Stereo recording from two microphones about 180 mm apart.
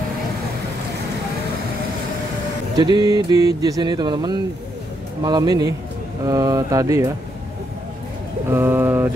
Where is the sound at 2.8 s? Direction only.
25° right (ahead or behind).